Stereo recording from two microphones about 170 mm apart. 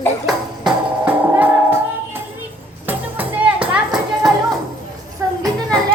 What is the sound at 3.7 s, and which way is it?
Clip-clop, 5° right (ahead or behind).